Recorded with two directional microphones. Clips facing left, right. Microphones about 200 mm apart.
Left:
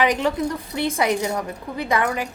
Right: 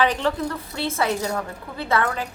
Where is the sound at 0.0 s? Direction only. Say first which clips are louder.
Left 2 dB; 15° left (ahead or behind).